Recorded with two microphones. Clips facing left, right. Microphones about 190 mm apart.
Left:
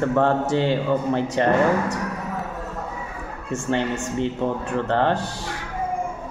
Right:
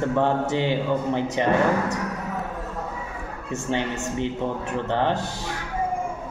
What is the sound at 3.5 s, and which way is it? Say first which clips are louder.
Speech: left 3 dB; 20° right (ahead or behind).